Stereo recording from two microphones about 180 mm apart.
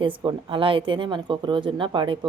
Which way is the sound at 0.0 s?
25° right (ahead or behind).